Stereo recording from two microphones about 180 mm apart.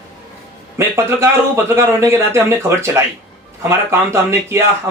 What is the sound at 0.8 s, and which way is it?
Speech, 15° right (ahead or behind).